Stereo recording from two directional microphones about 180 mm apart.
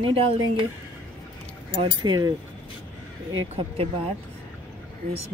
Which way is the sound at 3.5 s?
30° right (ahead or behind).